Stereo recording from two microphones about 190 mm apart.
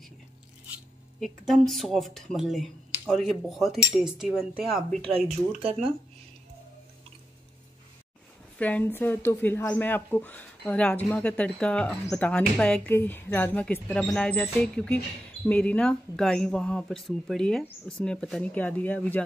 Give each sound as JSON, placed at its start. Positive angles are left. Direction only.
{"t": 1.2, "sound": "speech", "side_deg": 0}
{"t": 5.6, "sound": "speech", "side_deg": -30}
{"t": 8.5, "sound": "speech", "side_deg": 10}